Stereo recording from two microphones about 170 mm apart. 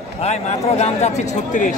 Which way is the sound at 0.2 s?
40° left (ahead or behind).